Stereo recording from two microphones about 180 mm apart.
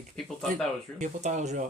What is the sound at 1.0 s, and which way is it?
Speech, 45° right (ahead or behind).